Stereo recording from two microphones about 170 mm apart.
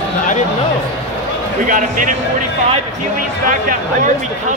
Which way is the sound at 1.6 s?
50° right (ahead or behind).